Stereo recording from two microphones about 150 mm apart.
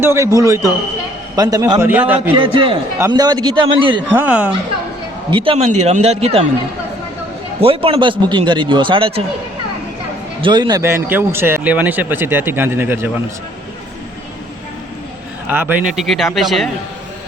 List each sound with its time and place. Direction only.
0.0 s a man's voice: 15° right (ahead or behind)
1.9 s speech: 10° right (ahead or behind)
2.4 s a man's voice: 35° right (ahead or behind)
4.1 s speech: 10° right (ahead or behind)
5.3 s a man's voice: 35° right (ahead or behind)
7.6 s a man's voice: 40° right (ahead or behind)
10.4 s speech: 30° right (ahead or behind)
15.4 s speech: 10° right (ahead or behind)
16.0 s speech: centre (ahead or behind)